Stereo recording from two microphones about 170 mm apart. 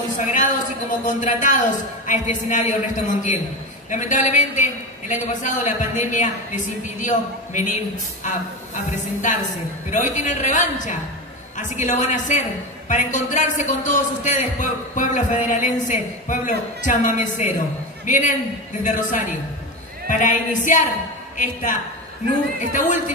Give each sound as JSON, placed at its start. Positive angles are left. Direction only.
{"t": 0.2, "sound": "a woman's voice", "side_deg": 50}